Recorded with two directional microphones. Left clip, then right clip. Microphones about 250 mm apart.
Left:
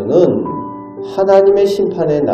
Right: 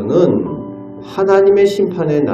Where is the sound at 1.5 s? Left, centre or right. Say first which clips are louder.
Even; right.